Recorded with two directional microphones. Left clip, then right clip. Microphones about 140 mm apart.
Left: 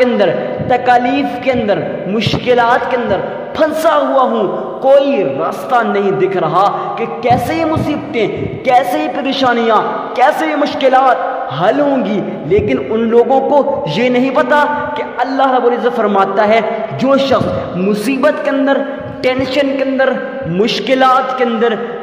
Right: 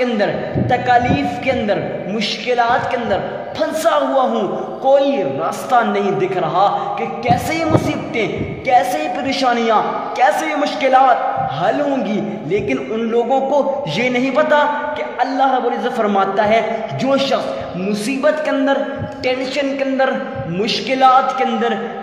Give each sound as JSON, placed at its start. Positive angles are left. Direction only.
{"t": 0.0, "sound": "a man's voice", "side_deg": 30}
{"t": 4.8, "sound": "a man's voice", "side_deg": 35}
{"t": 5.4, "sound": "a man's voice", "side_deg": 20}
{"t": 17.0, "sound": "a man's voice", "side_deg": 40}
{"t": 18.2, "sound": "a man's voice", "side_deg": 25}
{"t": 19.8, "sound": "a man's voice", "side_deg": 30}